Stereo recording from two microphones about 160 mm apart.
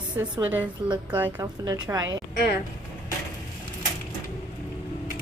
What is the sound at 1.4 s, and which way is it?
Speech, 20° right (ahead or behind).